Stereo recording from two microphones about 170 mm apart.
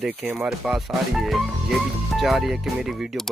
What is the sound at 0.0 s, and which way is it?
Speech, 10° right (ahead or behind).